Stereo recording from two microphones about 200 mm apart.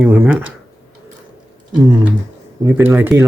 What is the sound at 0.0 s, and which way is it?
Speech, 5° right (ahead or behind).